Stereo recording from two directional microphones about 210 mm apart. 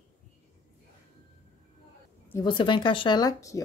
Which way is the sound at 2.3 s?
20° left (ahead or behind).